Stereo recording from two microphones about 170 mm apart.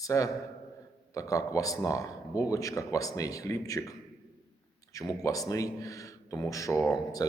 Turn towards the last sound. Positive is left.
turn(degrees=20)  # may be behind; listen again after turning